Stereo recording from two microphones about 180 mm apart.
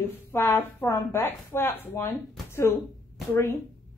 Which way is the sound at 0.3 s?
10° left (ahead or behind).